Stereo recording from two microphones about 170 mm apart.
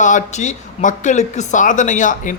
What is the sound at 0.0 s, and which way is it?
Speech, 45° left (ahead or behind).